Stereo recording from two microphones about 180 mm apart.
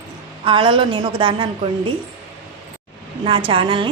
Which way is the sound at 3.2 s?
30° right (ahead or behind).